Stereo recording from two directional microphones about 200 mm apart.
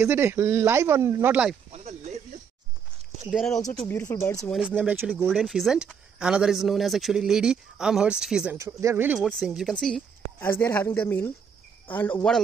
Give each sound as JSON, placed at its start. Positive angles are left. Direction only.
{"t": 0.0, "sound": "speech", "side_deg": -10}
{"t": 1.7, "sound": "a sound", "side_deg": -35}
{"t": 3.3, "sound": "a woman's voice", "side_deg": 0}
{"t": 3.8, "sound": "speech", "side_deg": 15}
{"t": 4.5, "sound": "a woman's voice", "side_deg": -5}
{"t": 8.5, "sound": "speech", "side_deg": -15}